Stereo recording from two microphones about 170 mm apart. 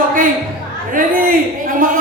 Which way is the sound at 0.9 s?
55° right (ahead or behind).